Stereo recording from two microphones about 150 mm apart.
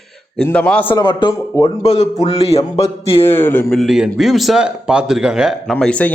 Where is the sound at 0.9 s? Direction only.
30° left (ahead or behind).